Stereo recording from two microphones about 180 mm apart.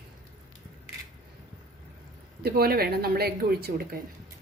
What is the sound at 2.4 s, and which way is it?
Speech, 60° right (ahead or behind).